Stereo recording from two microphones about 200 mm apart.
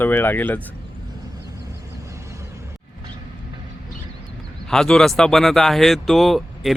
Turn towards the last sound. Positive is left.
turn(degrees=0)  # may be behind; listen again after turning